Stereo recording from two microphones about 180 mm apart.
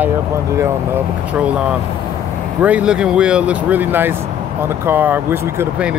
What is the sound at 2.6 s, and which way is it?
Speech, 5° right (ahead or behind).